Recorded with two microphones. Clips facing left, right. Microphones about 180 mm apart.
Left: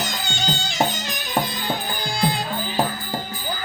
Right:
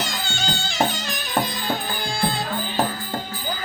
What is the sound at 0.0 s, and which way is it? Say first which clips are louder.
Music: left 1 dB; 20° left (ahead or behind).